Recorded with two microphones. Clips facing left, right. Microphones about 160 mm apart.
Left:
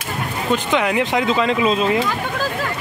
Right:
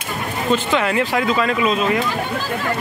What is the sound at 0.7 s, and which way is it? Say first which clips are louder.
Speech: even; 15° left (ahead or behind).